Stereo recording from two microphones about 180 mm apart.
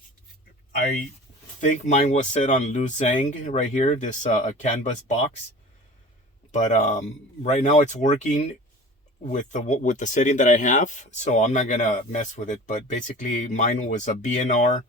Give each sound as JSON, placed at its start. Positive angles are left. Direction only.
{"t": 1.6, "sound": "speech", "side_deg": 40}
{"t": 6.5, "sound": "speech", "side_deg": 40}